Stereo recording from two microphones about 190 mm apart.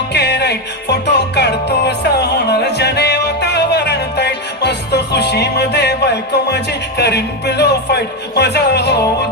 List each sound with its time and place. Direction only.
0.1 s music: 60° left (ahead or behind)